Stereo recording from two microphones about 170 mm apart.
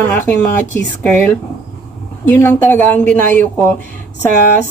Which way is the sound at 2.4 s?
15° left (ahead or behind).